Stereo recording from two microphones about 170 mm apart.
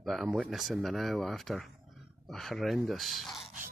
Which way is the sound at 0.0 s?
Centre (ahead or behind).